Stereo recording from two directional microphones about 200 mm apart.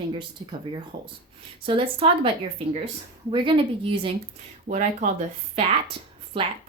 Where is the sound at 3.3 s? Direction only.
25° right (ahead or behind).